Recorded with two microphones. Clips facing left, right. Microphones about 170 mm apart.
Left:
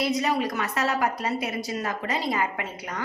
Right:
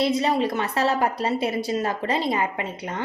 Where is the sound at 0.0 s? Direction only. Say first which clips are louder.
Right 3 dB; 25° right (ahead or behind).